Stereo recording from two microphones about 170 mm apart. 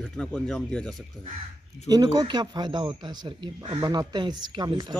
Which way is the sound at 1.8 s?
25° right (ahead or behind).